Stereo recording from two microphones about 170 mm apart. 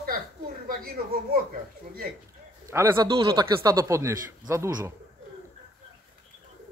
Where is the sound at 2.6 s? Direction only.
15° right (ahead or behind).